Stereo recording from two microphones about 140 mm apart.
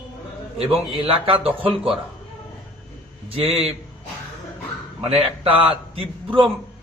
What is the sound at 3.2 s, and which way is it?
Speech, 40° right (ahead or behind).